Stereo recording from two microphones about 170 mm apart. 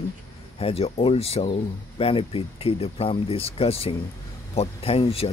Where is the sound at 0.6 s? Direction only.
35° left (ahead or behind).